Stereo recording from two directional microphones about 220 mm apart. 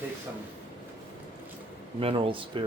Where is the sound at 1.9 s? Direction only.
25° right (ahead or behind).